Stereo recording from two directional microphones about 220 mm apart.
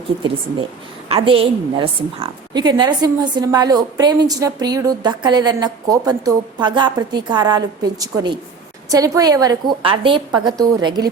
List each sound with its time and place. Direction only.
1.1 s a woman's voice: 25° right (ahead or behind)